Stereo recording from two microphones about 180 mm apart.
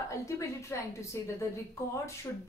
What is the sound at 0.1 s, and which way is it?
Speech, 15° left (ahead or behind).